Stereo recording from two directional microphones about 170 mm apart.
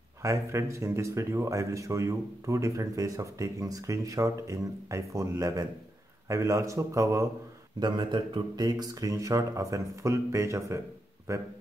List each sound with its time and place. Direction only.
0.2 s speech: 15° right (ahead or behind)